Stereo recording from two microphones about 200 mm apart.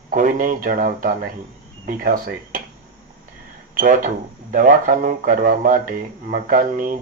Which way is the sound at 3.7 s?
40° right (ahead or behind).